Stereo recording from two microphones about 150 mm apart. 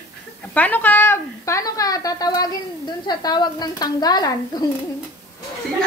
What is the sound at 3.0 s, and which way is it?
A woman's voice, 25° left (ahead or behind).